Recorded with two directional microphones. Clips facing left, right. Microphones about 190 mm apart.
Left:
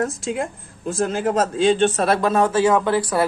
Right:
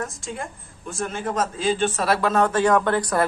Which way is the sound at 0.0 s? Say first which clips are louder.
Left 8 dB; 80° left.